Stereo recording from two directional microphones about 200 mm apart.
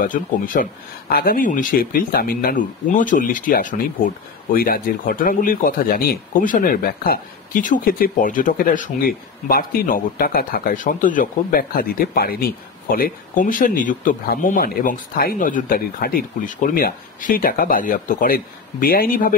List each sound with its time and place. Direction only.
0.0 s speech: 40° left (ahead or behind)